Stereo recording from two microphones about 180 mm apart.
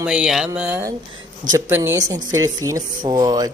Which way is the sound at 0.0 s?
5° right (ahead or behind).